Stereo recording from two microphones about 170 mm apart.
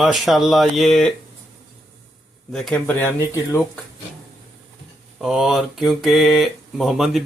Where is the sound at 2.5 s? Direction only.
5° left (ahead or behind).